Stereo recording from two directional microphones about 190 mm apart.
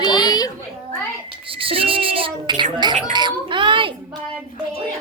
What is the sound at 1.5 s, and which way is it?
A child's voice, 30° right (ahead or behind).